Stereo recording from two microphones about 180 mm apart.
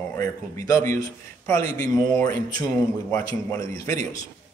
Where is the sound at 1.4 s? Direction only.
15° left (ahead or behind).